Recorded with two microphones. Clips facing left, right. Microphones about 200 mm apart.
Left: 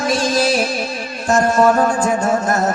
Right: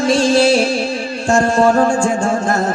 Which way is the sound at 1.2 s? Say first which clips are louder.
Right 1 dB; 30° right (ahead or behind).